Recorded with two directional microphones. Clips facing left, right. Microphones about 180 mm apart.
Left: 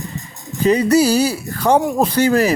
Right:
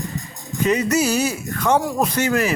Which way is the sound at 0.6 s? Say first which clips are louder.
Left 5 dB; 35° left (ahead or behind).